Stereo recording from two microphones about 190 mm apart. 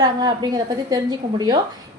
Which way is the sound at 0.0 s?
20° right (ahead or behind).